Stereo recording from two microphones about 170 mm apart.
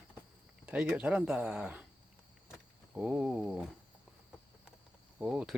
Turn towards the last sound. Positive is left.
turn(degrees=-5)  # may be behind; listen again after turning